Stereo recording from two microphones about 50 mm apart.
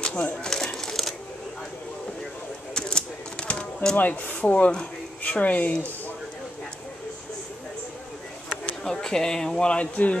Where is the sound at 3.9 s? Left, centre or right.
Left.